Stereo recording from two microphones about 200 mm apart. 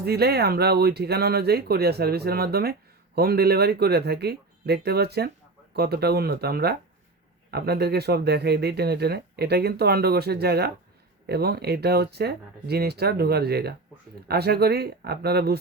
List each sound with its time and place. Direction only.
0.0 s speech: 55° right (ahead or behind)